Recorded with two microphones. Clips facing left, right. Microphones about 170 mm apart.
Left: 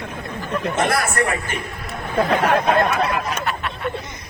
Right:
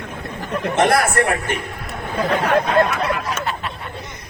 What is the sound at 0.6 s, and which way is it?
Speech, 65° right (ahead or behind).